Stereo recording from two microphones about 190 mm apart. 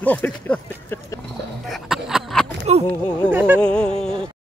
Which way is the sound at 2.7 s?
35° right (ahead or behind).